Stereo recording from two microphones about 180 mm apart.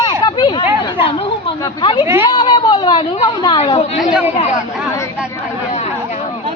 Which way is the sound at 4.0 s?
5° right (ahead or behind).